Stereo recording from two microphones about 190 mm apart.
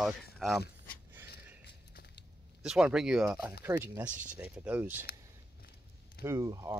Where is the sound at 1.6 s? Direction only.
60° left (ahead or behind).